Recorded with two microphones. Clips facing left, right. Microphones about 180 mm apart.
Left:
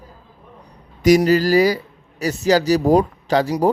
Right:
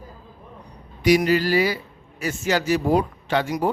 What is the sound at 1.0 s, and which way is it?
Speech, 40° left (ahead or behind).